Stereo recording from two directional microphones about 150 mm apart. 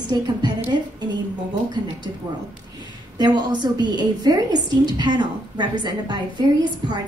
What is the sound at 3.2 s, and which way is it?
A woman's voice, 30° right (ahead or behind).